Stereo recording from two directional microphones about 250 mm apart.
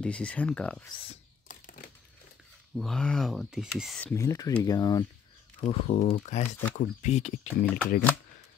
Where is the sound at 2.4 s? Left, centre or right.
Centre.